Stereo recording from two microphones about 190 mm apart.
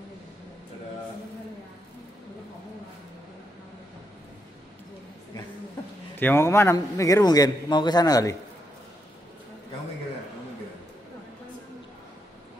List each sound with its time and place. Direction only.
6.1 s a man's voice: 10° left (ahead or behind)